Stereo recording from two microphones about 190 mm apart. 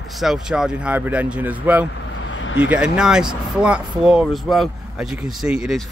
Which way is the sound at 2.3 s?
80° left.